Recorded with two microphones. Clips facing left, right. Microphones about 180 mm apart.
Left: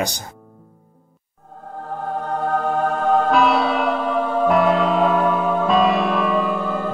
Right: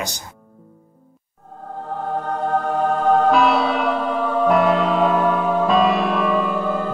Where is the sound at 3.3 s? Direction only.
Centre (ahead or behind).